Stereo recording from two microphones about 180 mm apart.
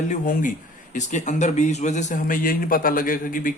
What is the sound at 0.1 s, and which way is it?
A man's voice, 45° left (ahead or behind).